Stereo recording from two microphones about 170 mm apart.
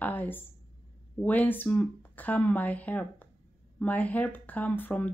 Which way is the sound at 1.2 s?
10° left (ahead or behind).